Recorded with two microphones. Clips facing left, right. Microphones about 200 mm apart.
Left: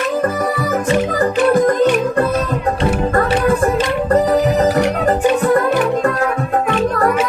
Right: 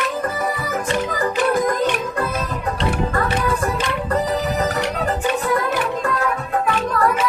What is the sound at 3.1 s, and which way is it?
Music, 50° left (ahead or behind).